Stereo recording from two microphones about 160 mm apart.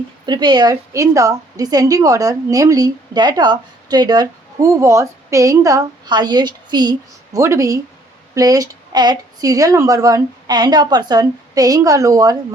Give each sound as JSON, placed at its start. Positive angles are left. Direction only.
{"t": 0.3, "sound": "a woman's voice", "side_deg": -25}